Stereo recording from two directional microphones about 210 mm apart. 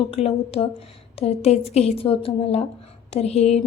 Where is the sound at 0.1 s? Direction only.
25° left (ahead or behind).